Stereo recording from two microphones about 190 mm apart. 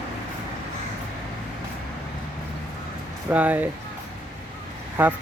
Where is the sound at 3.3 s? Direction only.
5° right (ahead or behind).